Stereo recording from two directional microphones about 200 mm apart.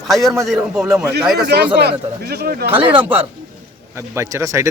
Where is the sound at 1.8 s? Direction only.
55° right (ahead or behind).